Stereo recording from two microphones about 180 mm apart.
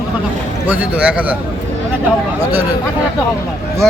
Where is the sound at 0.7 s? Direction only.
10° right (ahead or behind).